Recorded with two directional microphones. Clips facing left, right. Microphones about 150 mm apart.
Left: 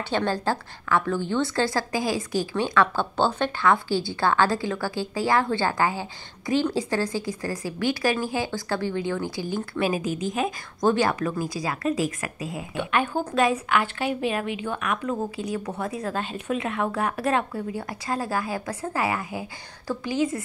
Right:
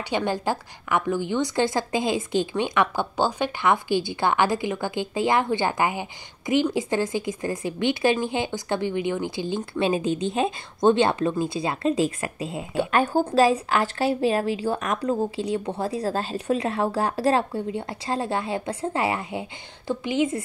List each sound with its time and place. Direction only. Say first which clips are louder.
0.1 s a woman's voice: even; 15° right (ahead or behind)